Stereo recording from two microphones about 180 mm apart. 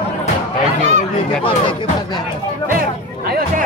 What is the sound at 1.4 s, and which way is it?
Speech, 30° left (ahead or behind).